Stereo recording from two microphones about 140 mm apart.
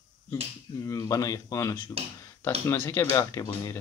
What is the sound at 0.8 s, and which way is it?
Speech, 25° left (ahead or behind).